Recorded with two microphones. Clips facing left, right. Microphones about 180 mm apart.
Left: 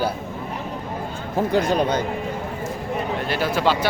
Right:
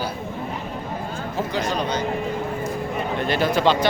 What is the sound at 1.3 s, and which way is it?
Speech, 55° left (ahead or behind).